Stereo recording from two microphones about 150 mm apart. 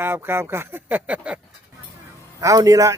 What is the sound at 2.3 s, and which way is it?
Speech, 25° right (ahead or behind).